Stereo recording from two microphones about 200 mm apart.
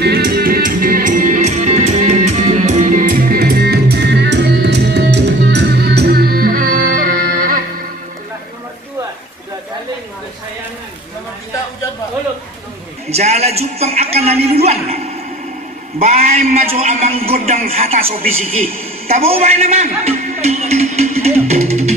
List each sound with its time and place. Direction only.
0.0 s music: 50° right (ahead or behind)
13.1 s a sound: 30° right (ahead or behind)
16.0 s a woman's voice: 35° right (ahead or behind)